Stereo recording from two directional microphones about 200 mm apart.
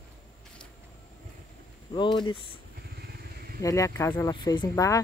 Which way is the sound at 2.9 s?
50° right (ahead or behind).